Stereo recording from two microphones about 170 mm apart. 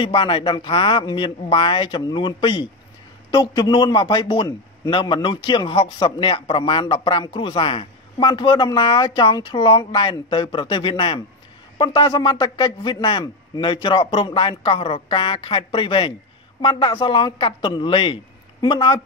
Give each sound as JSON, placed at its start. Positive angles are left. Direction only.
{"t": 0.0, "sound": "speech", "side_deg": 30}